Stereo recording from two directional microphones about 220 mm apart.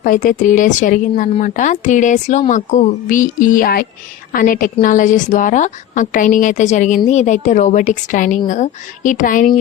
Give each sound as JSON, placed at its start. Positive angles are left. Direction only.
{"t": 0.0, "sound": "speech", "side_deg": 35}